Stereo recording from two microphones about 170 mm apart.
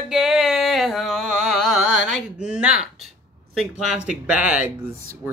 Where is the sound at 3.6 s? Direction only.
5° right (ahead or behind).